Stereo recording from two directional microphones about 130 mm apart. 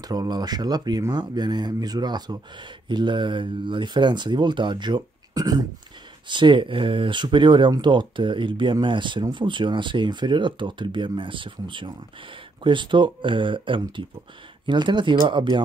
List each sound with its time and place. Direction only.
0.0 s speech: 30° right (ahead or behind)